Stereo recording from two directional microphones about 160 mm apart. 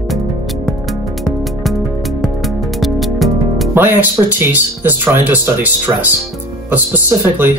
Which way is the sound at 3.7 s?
10° right (ahead or behind).